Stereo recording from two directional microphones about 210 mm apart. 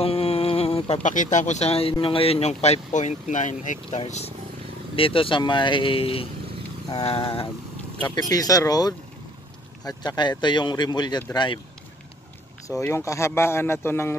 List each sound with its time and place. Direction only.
0.0 s speech: 30° left (ahead or behind)
12.6 s speech: 15° left (ahead or behind)